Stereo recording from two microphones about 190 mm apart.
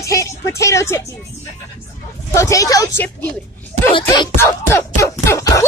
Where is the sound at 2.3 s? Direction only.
15° left (ahead or behind).